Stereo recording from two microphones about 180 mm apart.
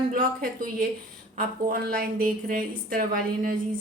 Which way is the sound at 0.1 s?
50° right (ahead or behind).